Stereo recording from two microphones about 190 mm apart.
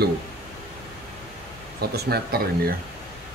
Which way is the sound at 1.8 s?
55° right (ahead or behind).